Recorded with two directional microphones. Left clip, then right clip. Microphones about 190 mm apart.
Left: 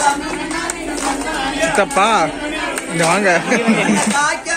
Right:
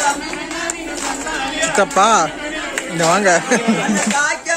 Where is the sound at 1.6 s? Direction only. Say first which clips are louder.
Right 1 dB; 30° right (ahead or behind).